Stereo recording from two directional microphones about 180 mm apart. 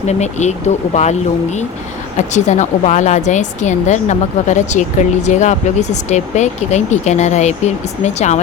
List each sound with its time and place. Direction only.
0.1 s a woman's voice: 40° left (ahead or behind)